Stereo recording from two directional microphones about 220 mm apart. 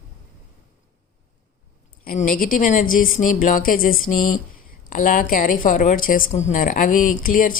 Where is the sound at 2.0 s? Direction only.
40° left (ahead or behind).